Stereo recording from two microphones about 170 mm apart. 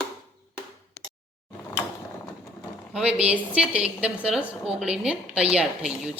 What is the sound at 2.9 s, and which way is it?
A woman's voice, 5° right (ahead or behind).